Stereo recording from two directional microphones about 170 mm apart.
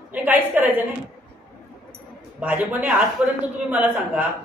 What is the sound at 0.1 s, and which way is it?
Speech, 10° right (ahead or behind).